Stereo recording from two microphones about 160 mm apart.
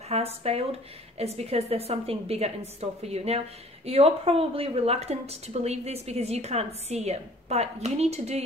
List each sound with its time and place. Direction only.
0.1 s speech: 40° right (ahead or behind)